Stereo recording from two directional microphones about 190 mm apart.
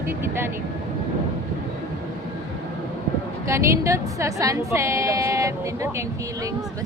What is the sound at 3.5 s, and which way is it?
Speech, 15° right (ahead or behind).